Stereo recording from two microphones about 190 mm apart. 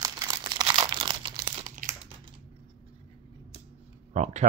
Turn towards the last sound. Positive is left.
turn(degrees=-35)  # may be behind; listen again after turning